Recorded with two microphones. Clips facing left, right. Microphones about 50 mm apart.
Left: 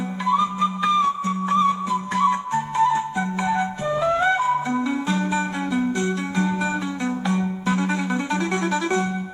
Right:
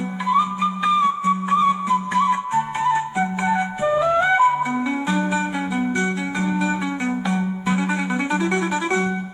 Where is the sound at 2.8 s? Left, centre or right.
Right.